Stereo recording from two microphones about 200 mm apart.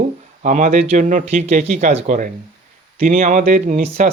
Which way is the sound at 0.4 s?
40° right (ahead or behind).